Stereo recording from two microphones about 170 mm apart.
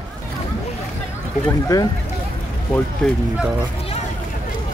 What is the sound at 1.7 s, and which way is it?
Speech, 20° left (ahead or behind).